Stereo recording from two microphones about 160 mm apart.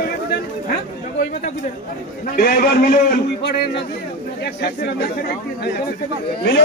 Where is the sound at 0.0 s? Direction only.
65° left (ahead or behind).